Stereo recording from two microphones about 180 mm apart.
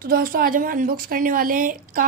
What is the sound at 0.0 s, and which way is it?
Speech, 50° right (ahead or behind).